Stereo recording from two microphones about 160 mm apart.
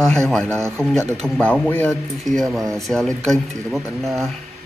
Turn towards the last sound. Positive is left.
turn(degrees=0)  # may be behind; listen again after turning